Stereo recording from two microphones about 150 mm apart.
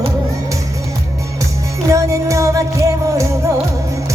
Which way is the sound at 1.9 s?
20° right (ahead or behind).